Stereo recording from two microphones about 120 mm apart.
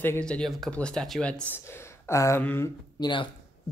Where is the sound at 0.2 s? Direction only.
5° left (ahead or behind).